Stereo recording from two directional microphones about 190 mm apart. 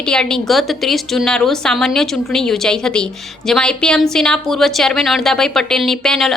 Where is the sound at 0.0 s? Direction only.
5° left (ahead or behind).